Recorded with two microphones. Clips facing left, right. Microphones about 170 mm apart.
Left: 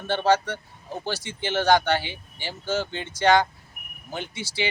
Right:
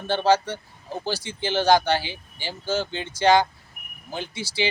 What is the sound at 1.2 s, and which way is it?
Speech, 35° right (ahead or behind).